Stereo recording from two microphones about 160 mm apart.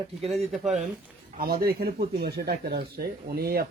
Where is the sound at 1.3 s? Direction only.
65° right (ahead or behind).